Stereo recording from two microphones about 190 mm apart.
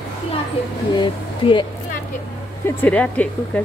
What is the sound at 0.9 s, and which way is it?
Speech, 25° left (ahead or behind).